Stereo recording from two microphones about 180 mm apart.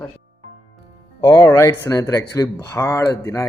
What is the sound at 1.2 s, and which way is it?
Speech, 25° left (ahead or behind).